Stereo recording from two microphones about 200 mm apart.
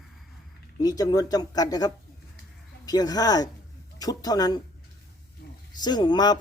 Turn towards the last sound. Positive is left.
turn(degrees=20)  # may be behind; listen again after turning